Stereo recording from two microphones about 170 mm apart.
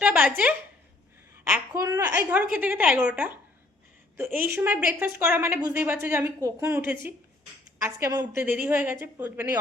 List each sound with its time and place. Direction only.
0.0 s speech: 10° right (ahead or behind)
1.8 s a woman's voice: 20° right (ahead or behind)